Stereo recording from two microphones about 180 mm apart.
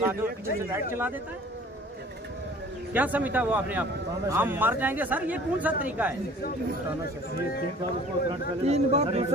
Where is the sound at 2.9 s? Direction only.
10° right (ahead or behind).